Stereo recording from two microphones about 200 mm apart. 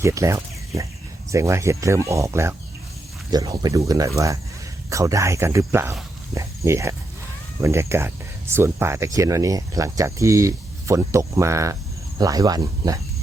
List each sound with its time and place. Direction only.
0.0 s speech: 15° right (ahead or behind)